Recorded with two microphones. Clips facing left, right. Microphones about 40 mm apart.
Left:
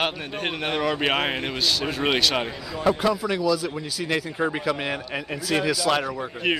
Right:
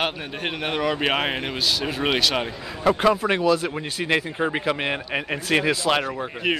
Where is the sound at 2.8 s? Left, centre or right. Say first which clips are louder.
Right 3 dB; right.